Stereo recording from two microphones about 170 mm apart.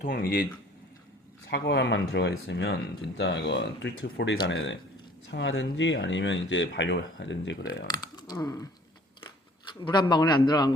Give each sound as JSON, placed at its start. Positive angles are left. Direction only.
{"t": 0.0, "sound": "speech", "side_deg": 55}
{"t": 1.5, "sound": "speech", "side_deg": 90}
{"t": 7.9, "sound": "speech", "side_deg": 25}
{"t": 9.8, "sound": "a man's voice", "side_deg": 25}